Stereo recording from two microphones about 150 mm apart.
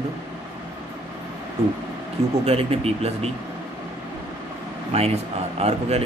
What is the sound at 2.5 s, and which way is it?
Speech, 40° right (ahead or behind).